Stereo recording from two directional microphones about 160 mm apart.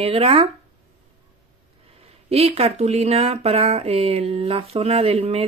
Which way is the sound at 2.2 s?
40° right (ahead or behind).